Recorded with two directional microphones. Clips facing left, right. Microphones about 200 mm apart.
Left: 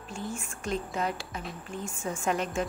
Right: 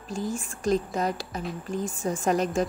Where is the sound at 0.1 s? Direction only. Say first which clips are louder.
Right 6 dB; 35° right (ahead or behind).